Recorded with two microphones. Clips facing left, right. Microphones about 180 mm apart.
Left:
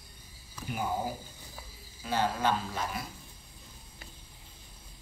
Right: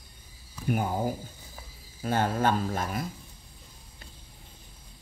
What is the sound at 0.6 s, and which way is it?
Speech, 50° right (ahead or behind).